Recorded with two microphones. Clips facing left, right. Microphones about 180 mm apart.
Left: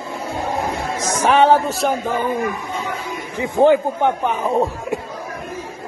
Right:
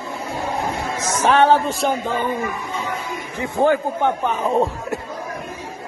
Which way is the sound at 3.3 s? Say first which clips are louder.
Left 4 dB; 15° left (ahead or behind).